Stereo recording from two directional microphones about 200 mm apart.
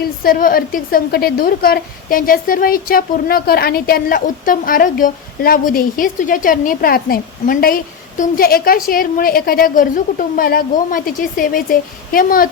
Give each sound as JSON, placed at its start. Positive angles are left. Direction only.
{"t": 0.0, "sound": "a woman's voice", "side_deg": 45}